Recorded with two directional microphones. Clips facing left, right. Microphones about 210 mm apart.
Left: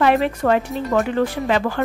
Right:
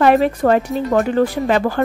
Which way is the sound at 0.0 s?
40° right (ahead or behind).